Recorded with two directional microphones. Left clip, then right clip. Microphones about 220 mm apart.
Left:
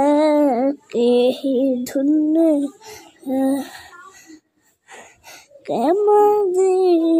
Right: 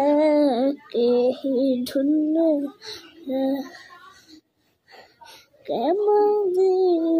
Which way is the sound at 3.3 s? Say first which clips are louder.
Left 4 dB; 30° left (ahead or behind).